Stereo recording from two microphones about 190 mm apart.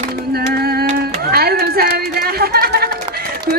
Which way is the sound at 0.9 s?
55° right (ahead or behind).